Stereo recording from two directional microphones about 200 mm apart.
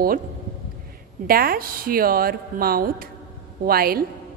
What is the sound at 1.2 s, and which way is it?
A woman's voice, 45° right (ahead or behind).